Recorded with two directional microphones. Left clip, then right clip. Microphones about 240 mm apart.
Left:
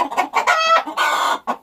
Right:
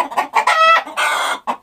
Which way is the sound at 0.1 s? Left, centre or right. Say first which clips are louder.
Right 2 dB; centre.